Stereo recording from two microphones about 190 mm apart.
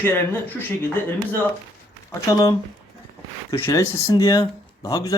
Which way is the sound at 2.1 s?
15° left (ahead or behind).